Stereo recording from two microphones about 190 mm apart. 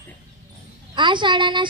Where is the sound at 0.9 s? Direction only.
25° right (ahead or behind).